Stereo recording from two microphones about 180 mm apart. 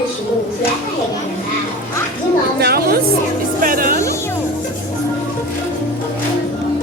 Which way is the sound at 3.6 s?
50° right (ahead or behind).